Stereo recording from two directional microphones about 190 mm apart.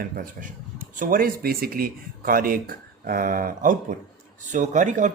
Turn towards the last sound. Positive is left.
turn(degrees=-40)  # may be behind; listen again after turning